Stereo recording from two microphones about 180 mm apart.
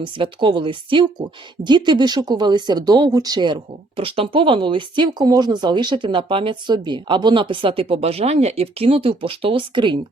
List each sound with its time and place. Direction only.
0.0 s speech: 25° right (ahead or behind)